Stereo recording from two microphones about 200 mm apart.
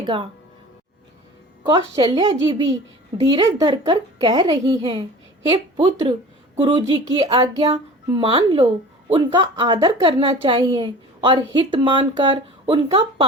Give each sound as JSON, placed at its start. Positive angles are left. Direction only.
{"t": 0.0, "sound": "speech", "side_deg": -25}
{"t": 1.6, "sound": "a woman's voice", "side_deg": -20}